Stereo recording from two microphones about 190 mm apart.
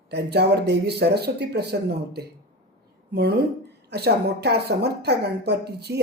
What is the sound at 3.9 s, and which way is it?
A woman's voice, 60° right (ahead or behind).